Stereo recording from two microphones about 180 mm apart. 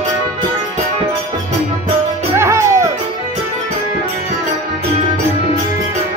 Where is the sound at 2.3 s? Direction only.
15° right (ahead or behind).